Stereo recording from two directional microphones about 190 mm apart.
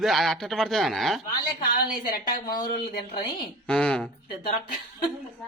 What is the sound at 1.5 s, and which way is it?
Speech, 45° left (ahead or behind).